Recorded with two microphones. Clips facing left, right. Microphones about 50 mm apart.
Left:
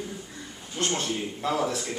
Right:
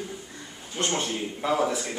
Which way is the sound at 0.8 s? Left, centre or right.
Centre.